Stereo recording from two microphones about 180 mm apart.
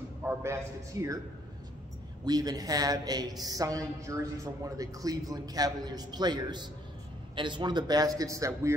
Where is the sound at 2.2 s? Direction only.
20° right (ahead or behind).